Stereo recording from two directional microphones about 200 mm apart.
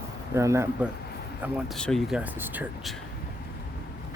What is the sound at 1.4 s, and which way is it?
Speech, centre (ahead or behind).